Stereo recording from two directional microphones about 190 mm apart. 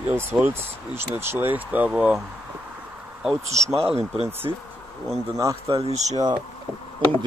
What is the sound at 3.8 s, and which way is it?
Speech, 30° right (ahead or behind).